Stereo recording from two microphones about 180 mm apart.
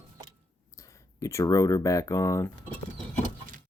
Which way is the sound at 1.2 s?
15° left (ahead or behind).